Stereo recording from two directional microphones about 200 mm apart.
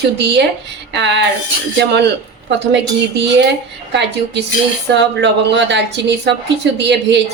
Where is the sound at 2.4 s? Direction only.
60° right (ahead or behind).